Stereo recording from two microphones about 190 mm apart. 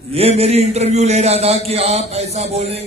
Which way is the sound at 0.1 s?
30° right (ahead or behind).